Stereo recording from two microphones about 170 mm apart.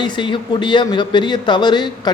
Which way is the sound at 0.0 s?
25° left (ahead or behind).